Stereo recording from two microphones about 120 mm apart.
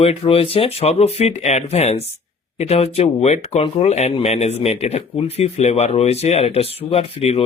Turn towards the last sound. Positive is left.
turn(degrees=55)  # may be behind; listen again after turning